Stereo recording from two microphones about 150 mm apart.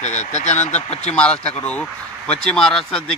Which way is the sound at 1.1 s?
10° left (ahead or behind).